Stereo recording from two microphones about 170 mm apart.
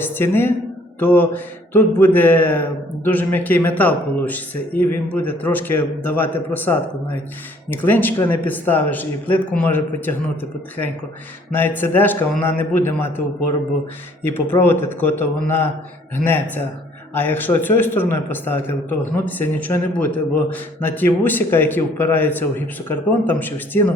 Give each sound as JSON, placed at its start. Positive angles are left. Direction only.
{"t": 0.0, "sound": "a man's voice", "side_deg": 10}
{"t": 11.5, "sound": "a man's voice", "side_deg": 10}